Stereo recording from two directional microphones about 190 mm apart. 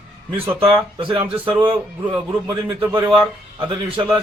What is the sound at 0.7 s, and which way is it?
Speech, 30° right (ahead or behind).